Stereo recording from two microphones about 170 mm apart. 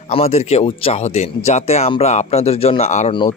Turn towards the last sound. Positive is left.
turn(degrees=40)  # may be behind; listen again after turning